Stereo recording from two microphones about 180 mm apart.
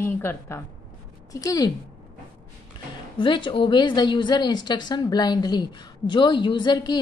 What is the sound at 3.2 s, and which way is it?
A woman's voice, 30° left (ahead or behind).